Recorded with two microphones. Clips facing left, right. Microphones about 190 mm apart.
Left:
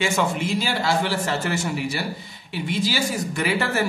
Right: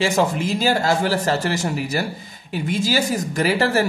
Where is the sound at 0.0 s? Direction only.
35° right (ahead or behind).